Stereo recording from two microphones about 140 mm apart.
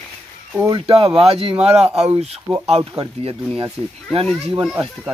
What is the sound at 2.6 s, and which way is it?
Speech, 50° right (ahead or behind).